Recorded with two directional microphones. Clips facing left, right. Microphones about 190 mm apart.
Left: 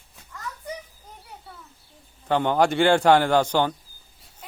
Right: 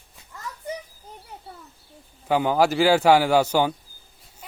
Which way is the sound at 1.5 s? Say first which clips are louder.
Right 3 dB; 25° right (ahead or behind).